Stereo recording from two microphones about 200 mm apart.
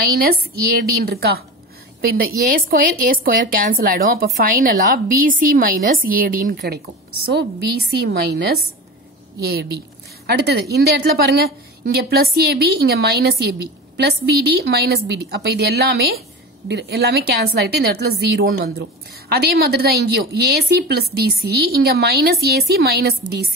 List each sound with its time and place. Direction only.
0.2 s a woman's voice: 50° right (ahead or behind)
7.9 s a woman's voice: 50° right (ahead or behind)
14.6 s a woman's voice: 55° right (ahead or behind)